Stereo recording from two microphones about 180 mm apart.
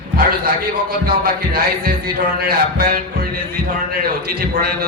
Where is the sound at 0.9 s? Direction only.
55° right (ahead or behind).